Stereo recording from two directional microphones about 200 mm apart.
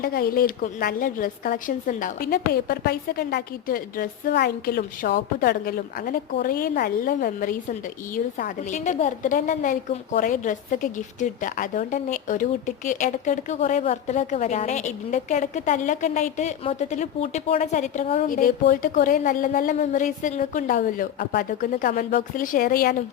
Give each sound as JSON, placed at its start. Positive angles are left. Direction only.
{"t": 0.0, "sound": "a woman's voice", "side_deg": 50}
{"t": 18.3, "sound": "a woman's voice", "side_deg": 45}